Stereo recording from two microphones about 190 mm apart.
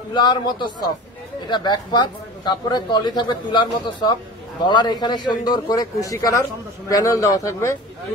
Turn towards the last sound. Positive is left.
turn(degrees=15)  # may be behind; listen again after turning